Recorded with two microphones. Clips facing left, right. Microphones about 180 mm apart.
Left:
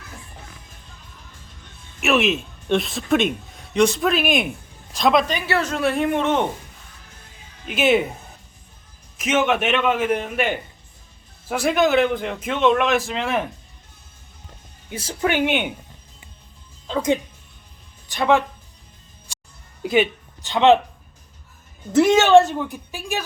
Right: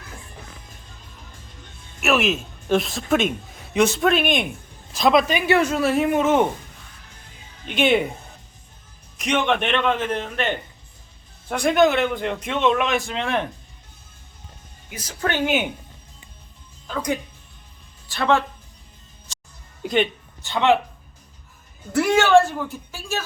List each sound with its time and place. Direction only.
2.0 s a man's voice: centre (ahead or behind)
5.5 s speech: 15° right (ahead or behind)
5.7 s a man's voice: centre (ahead or behind)
7.7 s a man's voice: 5° left (ahead or behind)
9.1 s a man's voice: 5° left (ahead or behind)
14.8 s a woman's voice: 30° left (ahead or behind)
15.2 s a man's voice: 10° left (ahead or behind)
15.4 s a man's voice: centre (ahead or behind)
16.8 s a woman's voice: 25° left (ahead or behind)
19.3 s music: 15° left (ahead or behind)
19.8 s a sound: 5° left (ahead or behind)
20.4 s a woman's voice: 20° left (ahead or behind)
21.9 s a woman's voice: 20° left (ahead or behind)